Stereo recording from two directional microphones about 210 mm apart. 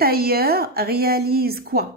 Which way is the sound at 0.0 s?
45° right (ahead or behind).